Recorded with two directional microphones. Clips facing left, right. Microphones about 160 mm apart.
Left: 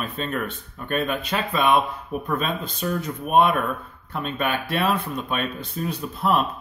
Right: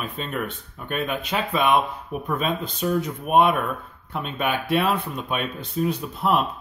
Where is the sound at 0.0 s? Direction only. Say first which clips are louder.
Left 1 dB; 15° right (ahead or behind).